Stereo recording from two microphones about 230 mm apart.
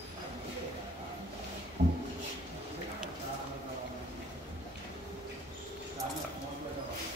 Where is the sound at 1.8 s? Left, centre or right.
Right.